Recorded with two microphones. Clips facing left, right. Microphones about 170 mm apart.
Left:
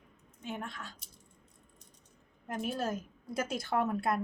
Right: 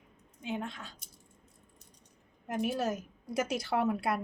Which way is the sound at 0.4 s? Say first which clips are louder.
Right 3 dB; 20° right (ahead or behind).